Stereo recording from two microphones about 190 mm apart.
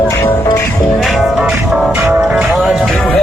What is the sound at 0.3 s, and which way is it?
Music, 20° left (ahead or behind).